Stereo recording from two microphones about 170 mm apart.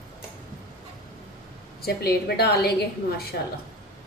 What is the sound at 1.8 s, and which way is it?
A woman's voice, 65° left (ahead or behind).